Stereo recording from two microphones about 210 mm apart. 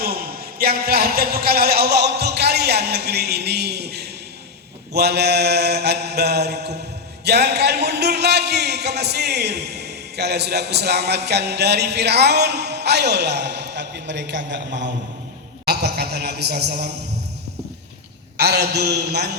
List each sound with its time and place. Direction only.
0.6 s speech: 45° right (ahead or behind)
15.6 s a sound: 50° right (ahead or behind)
18.3 s speech: 50° right (ahead or behind)